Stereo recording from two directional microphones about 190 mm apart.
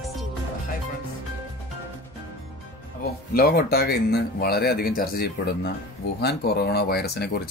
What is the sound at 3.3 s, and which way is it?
Speech, 55° left (ahead or behind).